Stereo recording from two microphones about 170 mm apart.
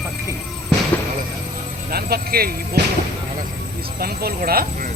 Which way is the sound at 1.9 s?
65° right (ahead or behind).